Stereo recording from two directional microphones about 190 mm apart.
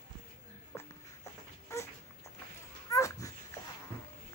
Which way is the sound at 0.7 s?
15° left (ahead or behind).